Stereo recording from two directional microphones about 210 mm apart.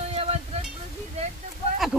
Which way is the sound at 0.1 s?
30° right (ahead or behind).